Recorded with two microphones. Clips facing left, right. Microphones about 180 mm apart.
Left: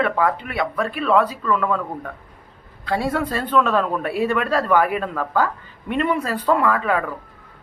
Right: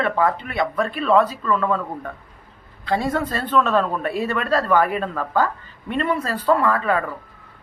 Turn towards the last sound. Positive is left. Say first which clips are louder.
# even
turn(degrees=10)  # may be behind; listen again after turning